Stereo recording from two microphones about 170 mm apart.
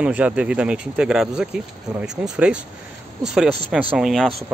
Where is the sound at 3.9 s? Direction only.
Centre (ahead or behind).